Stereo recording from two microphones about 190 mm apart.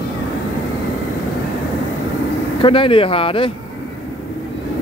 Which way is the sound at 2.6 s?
25° left (ahead or behind).